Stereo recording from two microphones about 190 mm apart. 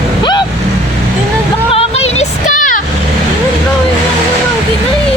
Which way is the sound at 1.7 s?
35° left (ahead or behind).